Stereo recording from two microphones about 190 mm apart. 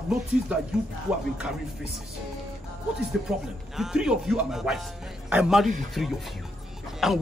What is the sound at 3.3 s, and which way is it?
A man's voice, 5° right (ahead or behind).